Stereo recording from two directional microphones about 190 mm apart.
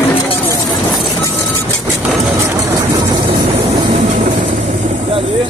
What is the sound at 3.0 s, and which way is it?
Vehicle, 25° right (ahead or behind).